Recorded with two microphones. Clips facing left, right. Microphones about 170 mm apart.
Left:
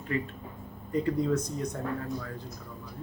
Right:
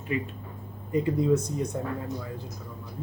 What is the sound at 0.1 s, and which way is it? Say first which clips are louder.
Speech: right 1 dB; 15° right (ahead or behind).